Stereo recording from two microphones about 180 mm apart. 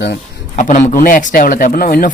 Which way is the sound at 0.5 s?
45° left (ahead or behind).